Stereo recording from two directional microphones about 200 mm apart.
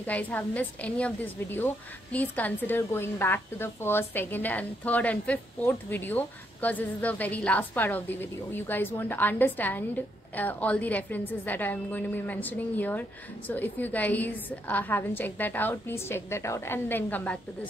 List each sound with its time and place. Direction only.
0.0 s a woman's voice: 10° left (ahead or behind)